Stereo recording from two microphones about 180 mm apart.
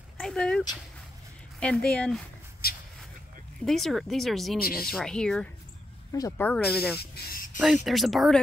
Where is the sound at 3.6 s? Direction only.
Centre (ahead or behind).